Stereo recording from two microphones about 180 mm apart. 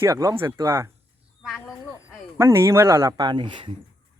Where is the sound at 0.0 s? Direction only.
15° right (ahead or behind).